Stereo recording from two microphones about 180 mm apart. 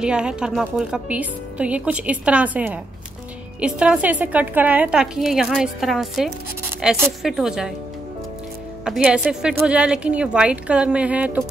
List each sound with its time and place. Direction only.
0.0 s a woman's voice: 5° right (ahead or behind)
8.8 s a woman's voice: 5° right (ahead or behind)